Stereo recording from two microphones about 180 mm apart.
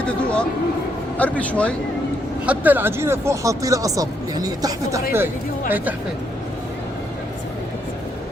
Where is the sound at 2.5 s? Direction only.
10° right (ahead or behind).